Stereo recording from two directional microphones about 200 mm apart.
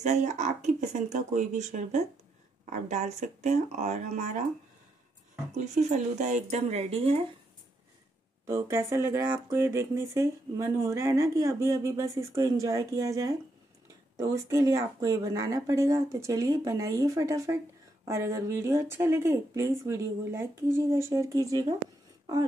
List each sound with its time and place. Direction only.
0.0 s speech: 35° right (ahead or behind)
5.8 s speech: 35° right (ahead or behind)
8.5 s speech: 15° right (ahead or behind)
22.2 s a sound: 20° right (ahead or behind)